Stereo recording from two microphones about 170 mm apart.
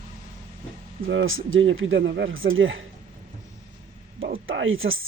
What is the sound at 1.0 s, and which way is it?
Speech, 90° right.